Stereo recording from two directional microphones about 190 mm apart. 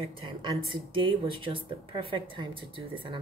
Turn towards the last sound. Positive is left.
turn(degrees=-25)  # may be behind; listen again after turning